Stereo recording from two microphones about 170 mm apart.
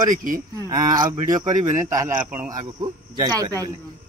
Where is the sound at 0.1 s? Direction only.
50° right (ahead or behind).